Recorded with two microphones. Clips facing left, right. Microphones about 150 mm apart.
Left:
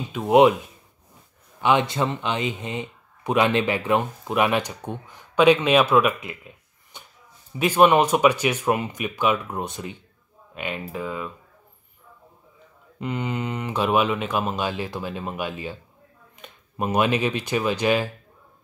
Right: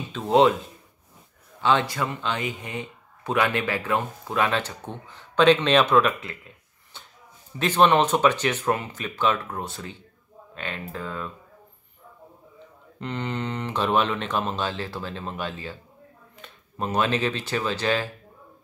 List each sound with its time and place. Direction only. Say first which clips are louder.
0.1 s speech: left 3 dB; 15° left (ahead or behind)
1.6 s speech: left 2 dB; 15° left (ahead or behind)
13.0 s speech: left 2 dB; 10° left (ahead or behind)